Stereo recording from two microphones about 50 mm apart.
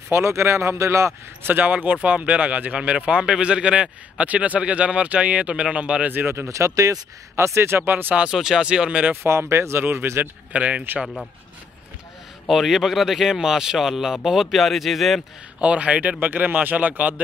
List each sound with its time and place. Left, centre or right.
0.1 s speech: right
1.5 s speech: right
6.1 s speech: right
7.3 s speech: right
7.8 s a man's voice: right
8.3 s speech: centre
8.6 s speech: right
9.1 s speech: right
10.5 s speech: right
12.4 s speech: centre
15.6 s speech: right
16.3 s a man's voice: right